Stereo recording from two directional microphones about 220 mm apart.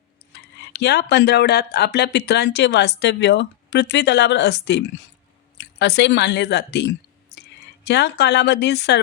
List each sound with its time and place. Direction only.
0.3 s speech: 50° left (ahead or behind)